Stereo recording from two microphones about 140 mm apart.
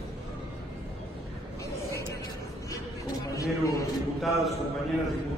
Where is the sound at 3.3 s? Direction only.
25° left (ahead or behind).